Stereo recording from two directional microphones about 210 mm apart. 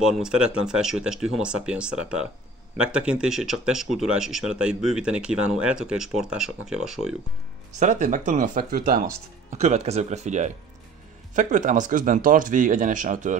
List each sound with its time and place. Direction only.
0.0 s speech: 5° right (ahead or behind)
7.7 s speech: 35° right (ahead or behind)